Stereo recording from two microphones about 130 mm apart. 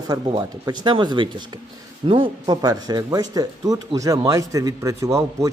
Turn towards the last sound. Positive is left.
turn(degrees=-25)  # may be behind; listen again after turning